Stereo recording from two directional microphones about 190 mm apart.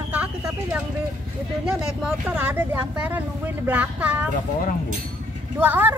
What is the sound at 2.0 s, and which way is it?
Speech, 10° right (ahead or behind).